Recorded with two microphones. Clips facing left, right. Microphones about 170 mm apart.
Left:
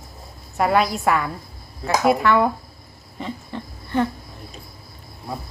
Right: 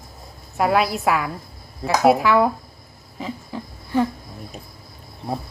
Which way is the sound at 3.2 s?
5° right (ahead or behind).